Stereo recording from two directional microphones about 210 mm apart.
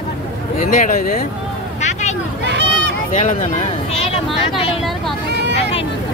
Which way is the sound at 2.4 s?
55° right (ahead or behind).